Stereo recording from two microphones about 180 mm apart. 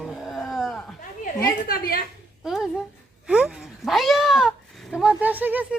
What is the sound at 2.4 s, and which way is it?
Speech, 5° right (ahead or behind).